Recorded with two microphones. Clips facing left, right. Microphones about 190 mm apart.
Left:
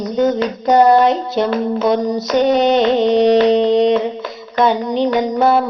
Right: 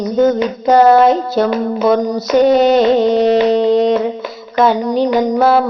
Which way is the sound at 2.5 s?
5° right (ahead or behind).